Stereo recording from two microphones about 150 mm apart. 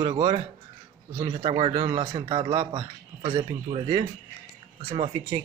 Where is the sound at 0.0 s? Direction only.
35° right (ahead or behind).